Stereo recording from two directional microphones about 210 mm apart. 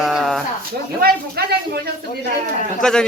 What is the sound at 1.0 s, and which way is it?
Speech, 50° right (ahead or behind).